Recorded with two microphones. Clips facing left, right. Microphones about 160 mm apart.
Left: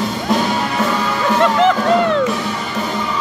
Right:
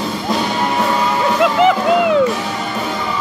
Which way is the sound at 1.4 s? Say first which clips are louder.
Right 1 dB; 5° right (ahead or behind).